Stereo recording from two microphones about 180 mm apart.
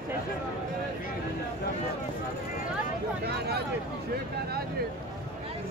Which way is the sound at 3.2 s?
65° right (ahead or behind).